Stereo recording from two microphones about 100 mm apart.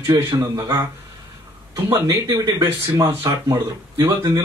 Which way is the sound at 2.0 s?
40° right (ahead or behind).